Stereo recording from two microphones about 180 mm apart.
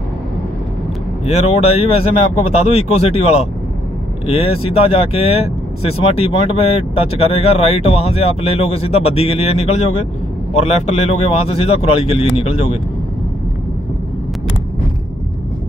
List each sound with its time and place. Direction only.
1.2 s speech: 35° left (ahead or behind)